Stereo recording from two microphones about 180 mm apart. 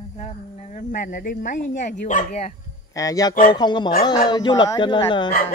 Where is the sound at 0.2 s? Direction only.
40° left (ahead or behind).